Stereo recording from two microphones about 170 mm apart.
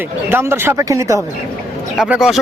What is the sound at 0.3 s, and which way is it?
Speech, 15° right (ahead or behind).